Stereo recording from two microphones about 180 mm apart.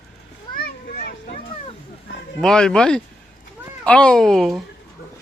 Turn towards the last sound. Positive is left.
turn(degrees=0)  # may be behind; listen again after turning